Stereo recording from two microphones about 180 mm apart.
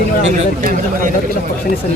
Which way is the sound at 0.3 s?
45° right (ahead or behind).